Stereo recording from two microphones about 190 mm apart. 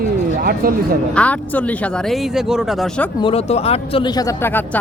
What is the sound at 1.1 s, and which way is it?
Speech, 5° left (ahead or behind).